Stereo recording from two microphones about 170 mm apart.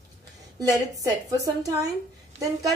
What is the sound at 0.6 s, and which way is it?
A woman's voice, 20° right (ahead or behind).